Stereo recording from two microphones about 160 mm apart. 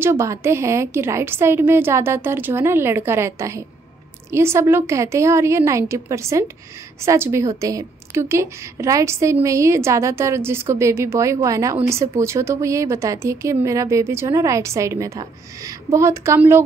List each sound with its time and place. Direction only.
0.0 s a woman's voice: 15° right (ahead or behind)